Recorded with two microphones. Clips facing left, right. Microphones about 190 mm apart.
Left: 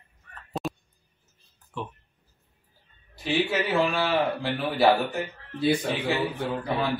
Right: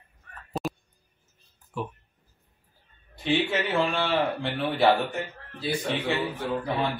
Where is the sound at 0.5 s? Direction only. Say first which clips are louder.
Even; centre (ahead or behind).